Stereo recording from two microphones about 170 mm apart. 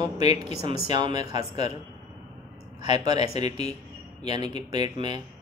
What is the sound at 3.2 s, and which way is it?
Speech, 40° left (ahead or behind).